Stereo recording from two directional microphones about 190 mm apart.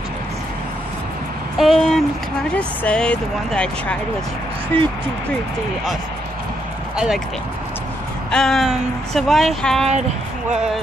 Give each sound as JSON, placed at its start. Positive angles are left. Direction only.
{"t": 1.6, "sound": "speech", "side_deg": 0}
{"t": 8.3, "sound": "speech", "side_deg": 5}